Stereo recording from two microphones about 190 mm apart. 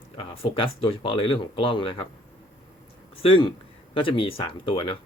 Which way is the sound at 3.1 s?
30° left (ahead or behind).